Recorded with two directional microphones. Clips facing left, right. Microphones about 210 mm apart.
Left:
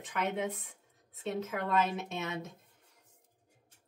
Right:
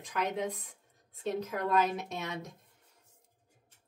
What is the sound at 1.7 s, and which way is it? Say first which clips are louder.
Speech: right 2 dB; centre (ahead or behind).